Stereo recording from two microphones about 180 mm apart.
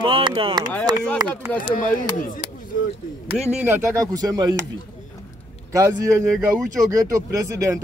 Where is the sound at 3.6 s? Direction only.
15° right (ahead or behind).